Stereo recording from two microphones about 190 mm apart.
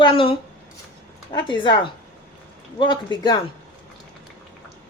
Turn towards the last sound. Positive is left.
turn(degrees=25)  # may be behind; listen again after turning